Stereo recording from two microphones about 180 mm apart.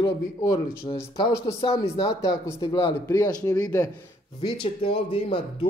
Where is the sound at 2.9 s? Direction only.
15° left (ahead or behind).